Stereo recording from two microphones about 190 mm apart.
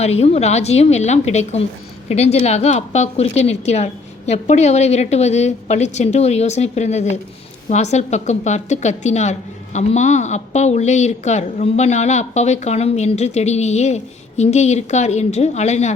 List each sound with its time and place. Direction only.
0.0 s a woman's voice: 35° left (ahead or behind)